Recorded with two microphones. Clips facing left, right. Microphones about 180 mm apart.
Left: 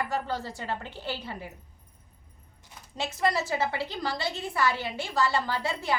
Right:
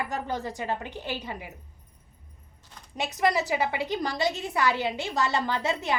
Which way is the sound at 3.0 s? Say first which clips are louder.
Right 2 dB; 20° right (ahead or behind).